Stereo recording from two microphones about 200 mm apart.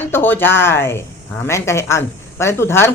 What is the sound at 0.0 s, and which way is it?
Speech, 10° left (ahead or behind).